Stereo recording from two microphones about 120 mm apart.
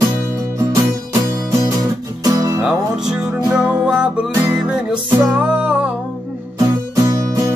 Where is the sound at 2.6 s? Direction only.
5° right (ahead or behind).